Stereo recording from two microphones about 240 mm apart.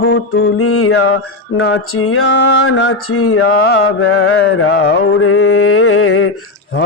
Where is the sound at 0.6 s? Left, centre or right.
Left.